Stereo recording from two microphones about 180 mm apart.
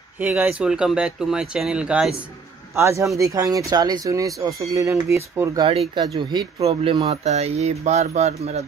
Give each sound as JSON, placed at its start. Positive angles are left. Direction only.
{"t": 0.2, "sound": "speech", "side_deg": -10}
{"t": 2.7, "sound": "speech", "side_deg": -15}
{"t": 6.1, "sound": "speech", "side_deg": -30}